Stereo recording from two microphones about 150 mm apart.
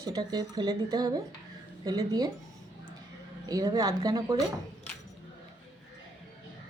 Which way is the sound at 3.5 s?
25° right (ahead or behind).